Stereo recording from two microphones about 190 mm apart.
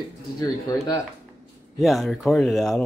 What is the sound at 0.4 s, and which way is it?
Speech, 20° left (ahead or behind).